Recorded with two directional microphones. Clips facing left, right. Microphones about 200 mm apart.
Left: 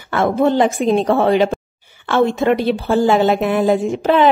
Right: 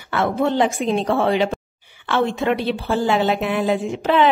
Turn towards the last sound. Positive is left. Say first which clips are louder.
# left 3 dB
turn(degrees=45)  # may be behind; listen again after turning